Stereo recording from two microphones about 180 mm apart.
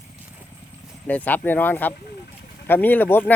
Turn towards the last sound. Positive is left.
turn(degrees=10)  # may be behind; listen again after turning